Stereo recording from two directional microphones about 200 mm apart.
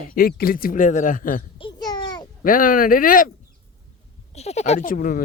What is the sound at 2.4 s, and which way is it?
Speech, 45° left (ahead or behind).